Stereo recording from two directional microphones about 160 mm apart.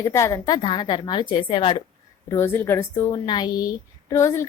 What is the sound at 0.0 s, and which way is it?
A woman's voice, 20° left (ahead or behind).